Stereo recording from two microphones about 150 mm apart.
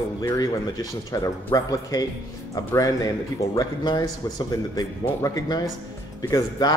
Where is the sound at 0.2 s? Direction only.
25° left (ahead or behind).